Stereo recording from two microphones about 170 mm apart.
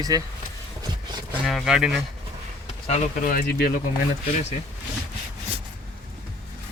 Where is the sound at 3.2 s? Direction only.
60° left (ahead or behind).